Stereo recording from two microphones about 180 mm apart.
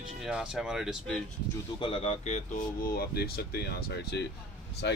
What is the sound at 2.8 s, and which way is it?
Speech, 60° left (ahead or behind).